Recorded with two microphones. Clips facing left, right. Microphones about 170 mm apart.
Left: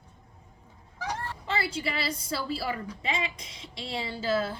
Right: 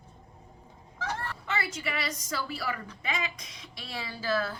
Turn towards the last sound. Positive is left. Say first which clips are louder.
# left 2 dB
turn(degrees=25)  # may be behind; listen again after turning